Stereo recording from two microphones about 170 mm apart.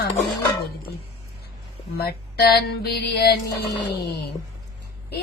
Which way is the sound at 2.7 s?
75° left (ahead or behind).